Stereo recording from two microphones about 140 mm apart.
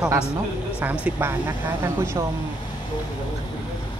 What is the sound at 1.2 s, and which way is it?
A man's voice, 15° right (ahead or behind).